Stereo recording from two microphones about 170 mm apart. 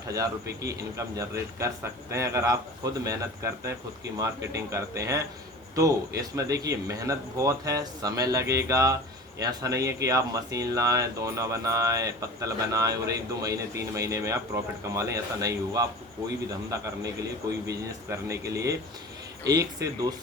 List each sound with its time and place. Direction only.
0.6 s speech: 20° right (ahead or behind)